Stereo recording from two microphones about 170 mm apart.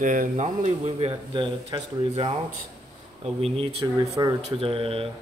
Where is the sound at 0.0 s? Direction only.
50° right (ahead or behind); by 2.3 s 30° right (ahead or behind).